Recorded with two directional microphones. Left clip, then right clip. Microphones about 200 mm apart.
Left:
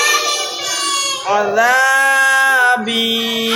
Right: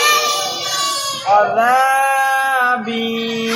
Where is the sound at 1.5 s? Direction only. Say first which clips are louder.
Left 1 dB; 45° left (ahead or behind).